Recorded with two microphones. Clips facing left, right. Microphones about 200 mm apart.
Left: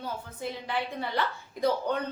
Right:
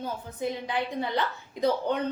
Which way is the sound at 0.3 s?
15° right (ahead or behind).